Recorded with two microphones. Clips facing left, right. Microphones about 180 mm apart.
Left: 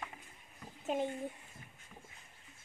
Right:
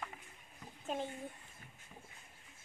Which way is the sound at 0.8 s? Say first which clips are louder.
Left 5 dB; 15° left (ahead or behind).